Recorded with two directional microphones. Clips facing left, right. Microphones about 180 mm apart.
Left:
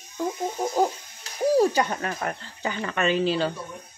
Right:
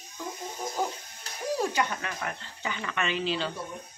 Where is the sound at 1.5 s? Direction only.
35° left (ahead or behind).